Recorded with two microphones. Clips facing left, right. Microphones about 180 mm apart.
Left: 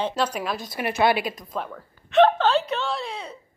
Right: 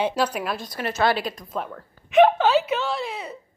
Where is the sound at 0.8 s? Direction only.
10° left (ahead or behind); by 3.4 s 5° right (ahead or behind).